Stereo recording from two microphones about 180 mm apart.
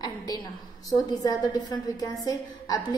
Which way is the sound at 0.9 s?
20° left (ahead or behind).